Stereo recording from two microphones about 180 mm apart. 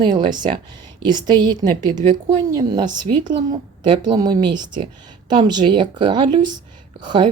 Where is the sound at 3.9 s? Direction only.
20° right (ahead or behind).